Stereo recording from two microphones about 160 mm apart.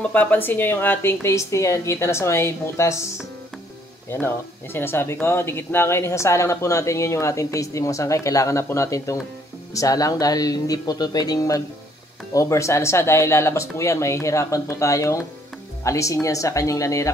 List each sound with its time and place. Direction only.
0.0 s a woman's voice: 10° left (ahead or behind)
4.7 s a woman's voice: 15° left (ahead or behind)